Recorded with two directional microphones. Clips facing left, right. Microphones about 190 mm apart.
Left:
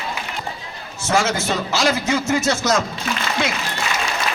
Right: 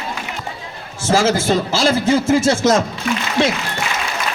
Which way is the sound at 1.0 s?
30° right (ahead or behind).